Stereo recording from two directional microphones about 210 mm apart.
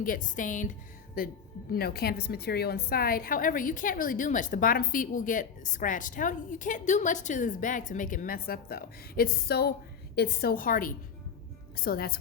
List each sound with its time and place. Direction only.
0.0 s a woman's voice: 40° left (ahead or behind)